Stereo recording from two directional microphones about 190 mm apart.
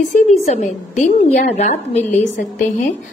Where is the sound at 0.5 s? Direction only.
40° left (ahead or behind).